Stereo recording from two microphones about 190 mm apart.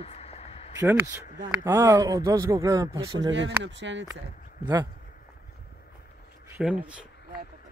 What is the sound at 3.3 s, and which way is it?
Speech, 75° right (ahead or behind).